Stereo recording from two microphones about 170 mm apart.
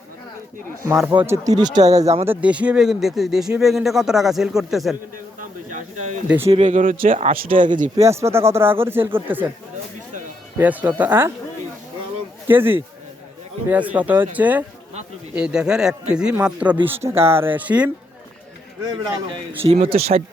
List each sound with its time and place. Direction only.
1.2 s speech: 20° right (ahead or behind)
2.2 s speech: 10° right (ahead or behind)
5.4 s a sound: 45° right (ahead or behind)
6.2 s speech: 10° right (ahead or behind)
6.5 s speech: 45° right (ahead or behind)
8.0 s speech: 15° right (ahead or behind)
10.6 s speech: 10° right (ahead or behind)
12.5 s speech: 10° right (ahead or behind)
19.0 s speech: 20° right (ahead or behind)
19.9 s speech: 35° right (ahead or behind)